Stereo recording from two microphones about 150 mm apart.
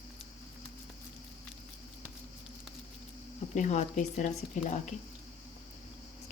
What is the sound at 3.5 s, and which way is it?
Speech, 50° left (ahead or behind).